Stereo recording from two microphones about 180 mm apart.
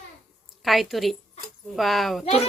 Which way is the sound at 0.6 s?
Centre (ahead or behind).